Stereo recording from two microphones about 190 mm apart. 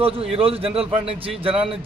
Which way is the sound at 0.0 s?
30° right (ahead or behind).